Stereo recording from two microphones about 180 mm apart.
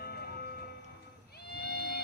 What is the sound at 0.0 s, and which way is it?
Music, 60° left (ahead or behind).